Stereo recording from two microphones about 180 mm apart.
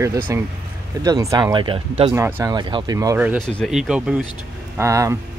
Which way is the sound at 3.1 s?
10° right (ahead or behind).